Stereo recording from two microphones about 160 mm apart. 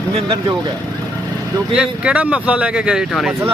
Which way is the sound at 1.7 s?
5° right (ahead or behind).